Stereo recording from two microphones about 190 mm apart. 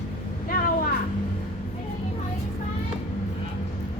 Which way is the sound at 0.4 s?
50° left (ahead or behind).